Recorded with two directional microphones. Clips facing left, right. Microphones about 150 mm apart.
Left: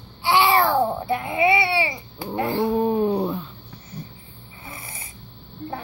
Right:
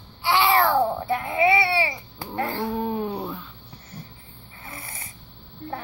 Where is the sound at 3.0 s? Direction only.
30° left (ahead or behind).